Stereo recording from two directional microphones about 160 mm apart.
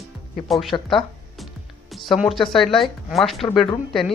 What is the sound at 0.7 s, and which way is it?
Speech, 30° left (ahead or behind).